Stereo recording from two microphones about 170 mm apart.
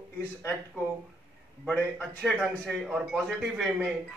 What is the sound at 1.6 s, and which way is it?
A man's voice, 5° left (ahead or behind).